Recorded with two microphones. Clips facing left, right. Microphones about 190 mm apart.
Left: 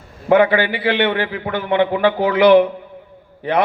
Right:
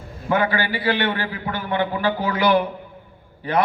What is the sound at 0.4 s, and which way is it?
A man's voice, 40° right (ahead or behind).